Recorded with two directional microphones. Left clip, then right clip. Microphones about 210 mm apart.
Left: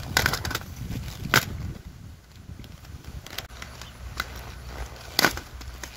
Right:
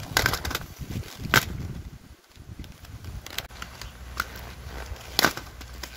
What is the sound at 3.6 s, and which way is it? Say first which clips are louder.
Horse: right 1 dB; 10° right (ahead or behind).